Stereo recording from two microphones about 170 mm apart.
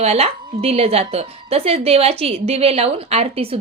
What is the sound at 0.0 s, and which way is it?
A woman's voice, 40° right (ahead or behind).